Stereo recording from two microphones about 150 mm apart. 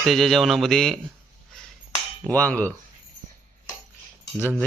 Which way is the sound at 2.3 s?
10° left (ahead or behind).